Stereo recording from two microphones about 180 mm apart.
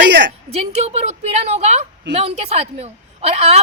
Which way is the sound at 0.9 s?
35° right (ahead or behind).